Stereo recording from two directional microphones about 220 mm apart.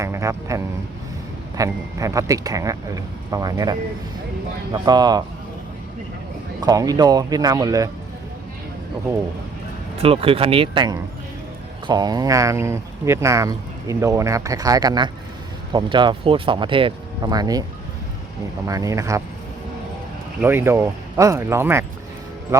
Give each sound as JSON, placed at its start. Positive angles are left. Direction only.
{"t": 0.0, "sound": "a sound", "side_deg": -15}
{"t": 1.5, "sound": "speech", "side_deg": -15}
{"t": 6.6, "sound": "speech", "side_deg": -15}
{"t": 10.0, "sound": "speech", "side_deg": -25}
{"t": 20.4, "sound": "speech", "side_deg": -10}